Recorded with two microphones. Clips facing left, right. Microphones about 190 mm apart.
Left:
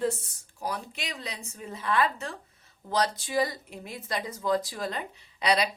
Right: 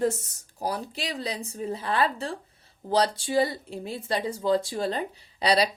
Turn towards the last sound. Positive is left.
turn(degrees=-35)  # may be behind; listen again after turning